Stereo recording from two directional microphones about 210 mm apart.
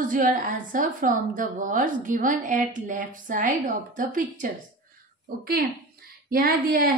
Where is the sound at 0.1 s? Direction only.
40° right (ahead or behind).